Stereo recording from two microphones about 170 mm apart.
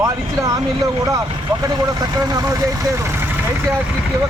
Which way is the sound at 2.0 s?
20° right (ahead or behind).